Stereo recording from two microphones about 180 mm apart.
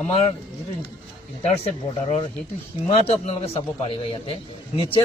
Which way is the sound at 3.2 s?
35° left (ahead or behind).